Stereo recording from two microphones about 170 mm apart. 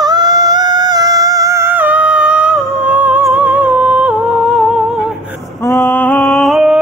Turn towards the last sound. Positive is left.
turn(degrees=0)  # may be behind; listen again after turning